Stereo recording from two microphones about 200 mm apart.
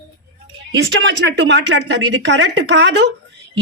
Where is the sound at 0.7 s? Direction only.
60° right (ahead or behind).